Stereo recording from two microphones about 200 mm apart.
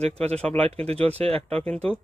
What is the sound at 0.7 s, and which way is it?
Speech, 30° right (ahead or behind).